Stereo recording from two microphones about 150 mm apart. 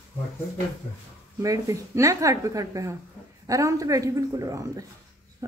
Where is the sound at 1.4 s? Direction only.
20° right (ahead or behind).